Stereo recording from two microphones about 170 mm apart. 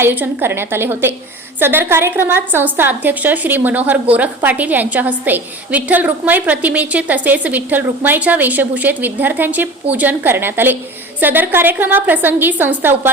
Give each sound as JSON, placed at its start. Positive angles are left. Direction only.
{"t": 0.0, "sound": "a woman's voice", "side_deg": -10}